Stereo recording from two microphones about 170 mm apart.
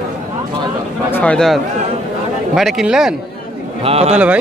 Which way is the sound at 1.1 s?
10° left (ahead or behind).